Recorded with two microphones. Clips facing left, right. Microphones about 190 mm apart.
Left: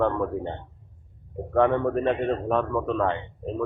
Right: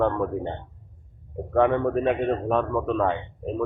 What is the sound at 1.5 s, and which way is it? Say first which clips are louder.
A man's voice: right 1 dB; 5° right (ahead or behind).